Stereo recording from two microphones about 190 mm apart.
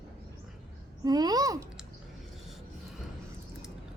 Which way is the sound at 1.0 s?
20° right (ahead or behind).